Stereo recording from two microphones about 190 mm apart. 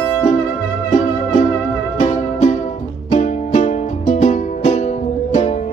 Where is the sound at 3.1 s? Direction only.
35° left (ahead or behind).